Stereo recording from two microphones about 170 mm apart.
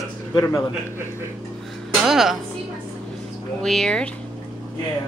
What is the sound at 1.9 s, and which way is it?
Music, centre (ahead or behind).